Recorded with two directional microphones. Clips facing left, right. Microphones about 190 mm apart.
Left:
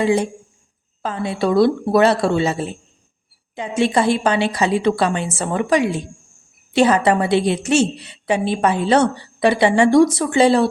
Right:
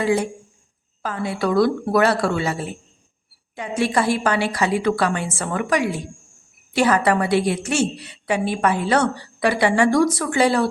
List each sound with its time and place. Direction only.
0.0 s a woman's voice: 20° left (ahead or behind)